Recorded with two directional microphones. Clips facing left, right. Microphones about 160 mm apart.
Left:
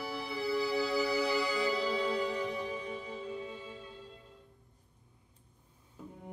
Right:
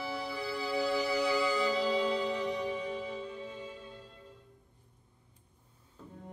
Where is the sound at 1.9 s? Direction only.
30° right (ahead or behind).